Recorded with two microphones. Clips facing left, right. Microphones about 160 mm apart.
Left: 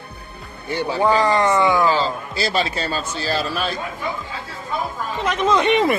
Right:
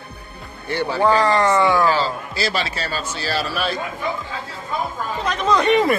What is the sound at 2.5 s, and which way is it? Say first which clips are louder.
Speech: left 3 dB; 30° left (ahead or behind).